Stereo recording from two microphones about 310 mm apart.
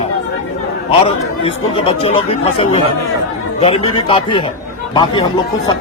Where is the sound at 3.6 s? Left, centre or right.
Centre.